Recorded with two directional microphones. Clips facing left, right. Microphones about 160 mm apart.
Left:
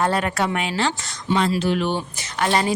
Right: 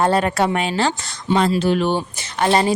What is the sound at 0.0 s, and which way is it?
Speech, 30° right (ahead or behind).